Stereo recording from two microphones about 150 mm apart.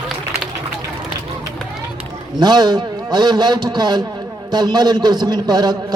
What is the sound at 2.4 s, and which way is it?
A man's voice, 30° right (ahead or behind).